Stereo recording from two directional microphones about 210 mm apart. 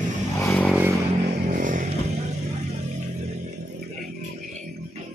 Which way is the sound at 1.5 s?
40° right (ahead or behind).